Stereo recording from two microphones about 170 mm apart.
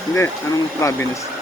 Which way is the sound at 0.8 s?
15° left (ahead or behind).